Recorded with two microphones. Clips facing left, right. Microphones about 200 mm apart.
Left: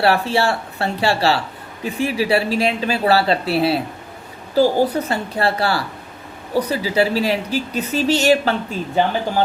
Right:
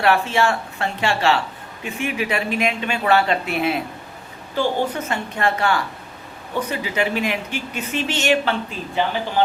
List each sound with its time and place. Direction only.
0.0 s speech: 35° left (ahead or behind)